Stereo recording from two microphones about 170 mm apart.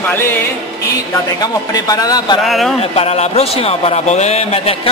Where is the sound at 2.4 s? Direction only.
Centre (ahead or behind).